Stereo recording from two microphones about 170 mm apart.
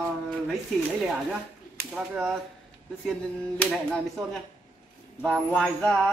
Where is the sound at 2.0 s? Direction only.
5° right (ahead or behind).